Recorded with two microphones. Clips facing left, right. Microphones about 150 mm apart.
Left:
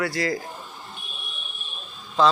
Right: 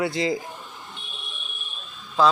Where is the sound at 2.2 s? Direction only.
5° right (ahead or behind).